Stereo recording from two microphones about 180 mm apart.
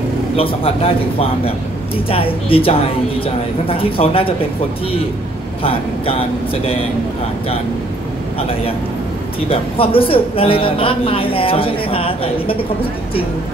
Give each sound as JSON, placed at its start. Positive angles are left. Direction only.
{"t": 0.4, "sound": "a man's voice", "side_deg": 30}
{"t": 2.0, "sound": "a man's voice", "side_deg": 30}
{"t": 5.6, "sound": "a man's voice", "side_deg": 30}
{"t": 9.5, "sound": "a man's voice", "side_deg": 30}